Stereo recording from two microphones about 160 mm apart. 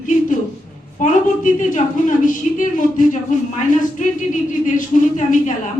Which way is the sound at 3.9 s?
55° left (ahead or behind).